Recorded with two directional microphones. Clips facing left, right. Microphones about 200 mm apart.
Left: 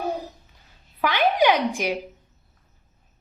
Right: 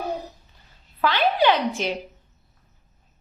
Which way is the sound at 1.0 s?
15° left (ahead or behind).